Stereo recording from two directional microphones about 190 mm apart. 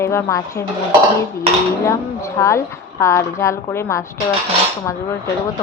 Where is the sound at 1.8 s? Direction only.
15° left (ahead or behind).